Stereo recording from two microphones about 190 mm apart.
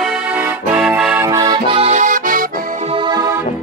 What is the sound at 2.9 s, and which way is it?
Music, 25° right (ahead or behind).